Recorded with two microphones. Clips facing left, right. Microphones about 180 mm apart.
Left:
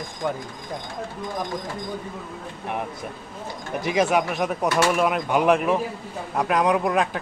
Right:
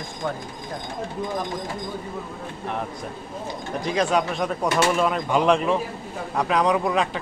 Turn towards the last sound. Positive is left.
turn(degrees=0)  # may be behind; listen again after turning